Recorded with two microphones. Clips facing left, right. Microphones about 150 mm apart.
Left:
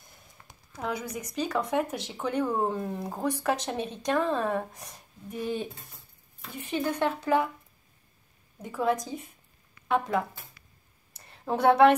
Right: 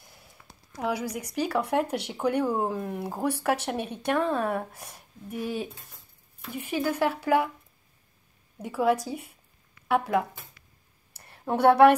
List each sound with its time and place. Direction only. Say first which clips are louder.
0.7 s speech: right 3 dB; 10° right (ahead or behind)
8.5 s speech: right 3 dB; 10° right (ahead or behind)
11.4 s speech: right 2 dB; 5° right (ahead or behind)